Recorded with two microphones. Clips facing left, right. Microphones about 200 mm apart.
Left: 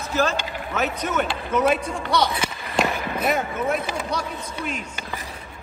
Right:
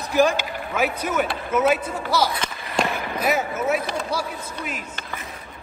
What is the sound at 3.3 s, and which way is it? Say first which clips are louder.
A man's voice: right 3 dB; 5° right (ahead or behind).